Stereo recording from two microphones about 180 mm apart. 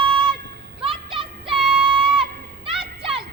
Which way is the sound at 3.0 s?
30° right (ahead or behind).